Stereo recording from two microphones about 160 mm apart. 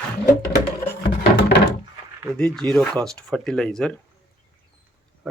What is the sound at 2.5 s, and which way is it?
Speech, 5° left (ahead or behind).